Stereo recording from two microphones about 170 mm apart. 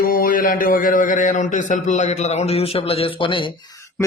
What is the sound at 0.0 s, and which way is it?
Speech, 60° left (ahead or behind).